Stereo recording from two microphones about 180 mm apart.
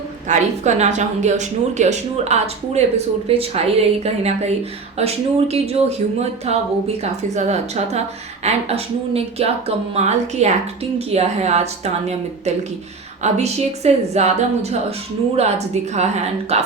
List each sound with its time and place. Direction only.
0.3 s speech: 40° right (ahead or behind)